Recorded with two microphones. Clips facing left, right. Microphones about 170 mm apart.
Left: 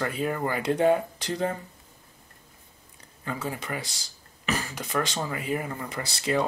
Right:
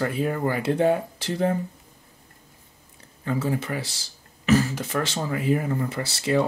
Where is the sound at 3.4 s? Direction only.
15° left (ahead or behind).